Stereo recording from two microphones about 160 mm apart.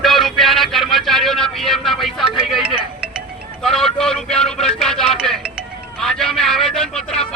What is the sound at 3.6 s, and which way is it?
Vehicle, centre (ahead or behind).